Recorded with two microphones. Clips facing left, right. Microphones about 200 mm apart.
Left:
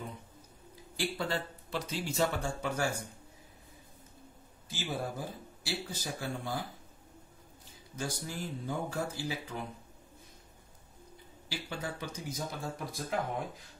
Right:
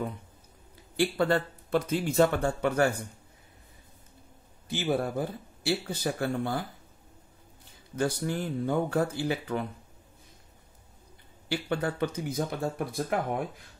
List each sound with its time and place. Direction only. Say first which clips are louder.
0.9 s speech: right 9 dB; 60° right (ahead or behind)
4.6 s speech: right 9 dB; 60° right (ahead or behind)
7.9 s speech: right 10 dB; 60° right (ahead or behind)
11.4 s speech: right 10 dB; 60° right (ahead or behind)